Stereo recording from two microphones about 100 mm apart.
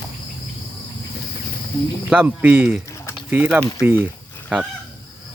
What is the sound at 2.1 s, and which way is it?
Speech, 15° right (ahead or behind).